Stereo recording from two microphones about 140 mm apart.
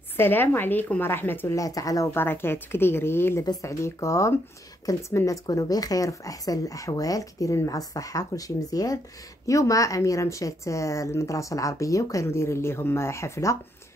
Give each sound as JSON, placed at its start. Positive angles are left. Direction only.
{"t": 0.2, "sound": "a woman's voice", "side_deg": 15}